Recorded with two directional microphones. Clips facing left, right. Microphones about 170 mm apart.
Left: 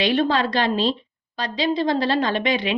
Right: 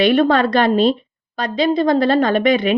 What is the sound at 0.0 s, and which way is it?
A woman's voice, 55° right (ahead or behind).